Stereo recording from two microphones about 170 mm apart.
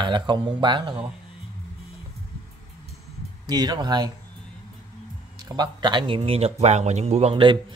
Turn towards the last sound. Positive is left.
turn(degrees=-30)  # may be behind; listen again after turning